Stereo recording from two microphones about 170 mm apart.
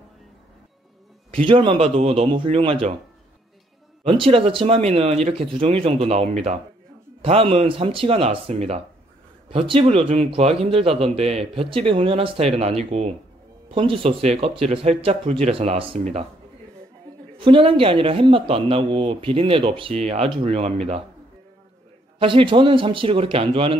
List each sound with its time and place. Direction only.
1.3 s speech: 30° right (ahead or behind)
4.0 s speech: 30° right (ahead or behind)
17.4 s speech: 30° right (ahead or behind)
22.2 s speech: 30° right (ahead or behind)